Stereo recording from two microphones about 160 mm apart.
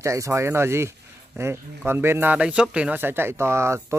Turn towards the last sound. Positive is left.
turn(degrees=-15)  # may be behind; listen again after turning